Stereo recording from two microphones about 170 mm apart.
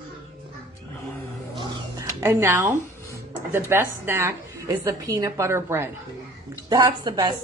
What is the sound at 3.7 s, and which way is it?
A woman's voice, 15° right (ahead or behind).